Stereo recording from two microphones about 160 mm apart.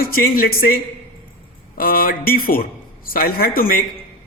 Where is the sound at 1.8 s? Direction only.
65° left (ahead or behind).